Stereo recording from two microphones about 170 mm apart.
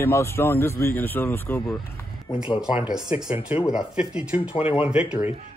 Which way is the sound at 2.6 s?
5° right (ahead or behind).